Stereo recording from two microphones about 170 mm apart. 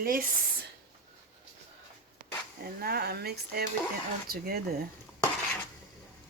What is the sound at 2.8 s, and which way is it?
Speech, 70° right (ahead or behind).